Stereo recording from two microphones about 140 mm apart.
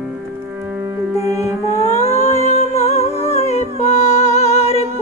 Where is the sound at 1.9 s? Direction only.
45° left (ahead or behind).